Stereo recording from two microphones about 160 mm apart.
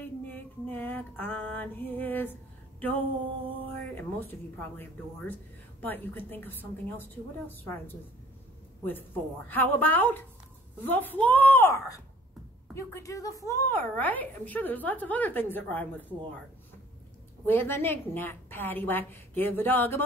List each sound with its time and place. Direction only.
0.0 s a sound: 10° left (ahead or behind)
2.8 s speech: 10° left (ahead or behind)
9.5 s a woman's voice: 10° left (ahead or behind)
17.5 s speech: 15° left (ahead or behind)